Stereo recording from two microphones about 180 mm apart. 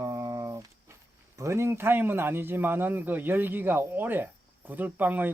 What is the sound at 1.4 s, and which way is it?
A man's voice, 15° right (ahead or behind).